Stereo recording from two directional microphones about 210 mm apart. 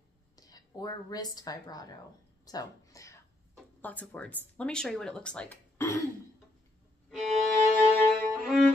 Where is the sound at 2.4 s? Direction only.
15° left (ahead or behind).